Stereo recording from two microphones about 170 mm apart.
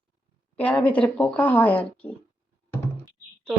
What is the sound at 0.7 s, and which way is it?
Speech, 10° left (ahead or behind).